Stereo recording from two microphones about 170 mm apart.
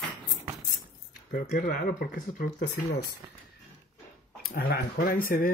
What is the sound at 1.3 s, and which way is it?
Speech, 55° left (ahead or behind).